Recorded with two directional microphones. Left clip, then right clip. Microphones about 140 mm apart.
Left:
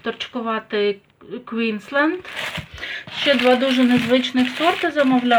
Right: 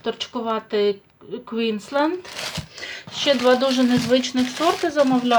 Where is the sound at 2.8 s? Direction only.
Centre (ahead or behind).